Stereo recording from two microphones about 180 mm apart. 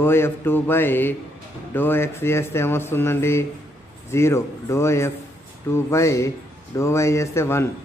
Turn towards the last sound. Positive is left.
turn(degrees=15)  # may be behind; listen again after turning